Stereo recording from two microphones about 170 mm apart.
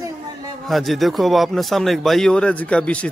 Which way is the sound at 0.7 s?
Centre (ahead or behind).